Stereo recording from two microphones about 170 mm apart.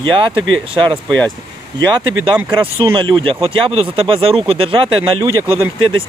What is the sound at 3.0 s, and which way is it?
Speech, 30° right (ahead or behind).